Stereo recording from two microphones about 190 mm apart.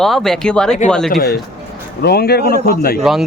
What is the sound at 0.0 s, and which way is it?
Speech, centre (ahead or behind).